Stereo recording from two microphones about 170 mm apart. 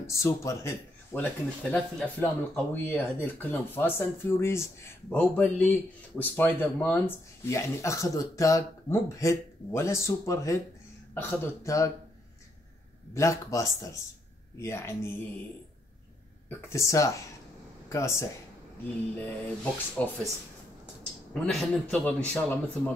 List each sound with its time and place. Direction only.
0.0 s speech: 15° left (ahead or behind)
13.1 s speech: 15° left (ahead or behind)
16.4 s speech: 15° left (ahead or behind)
21.3 s speech: 5° left (ahead or behind)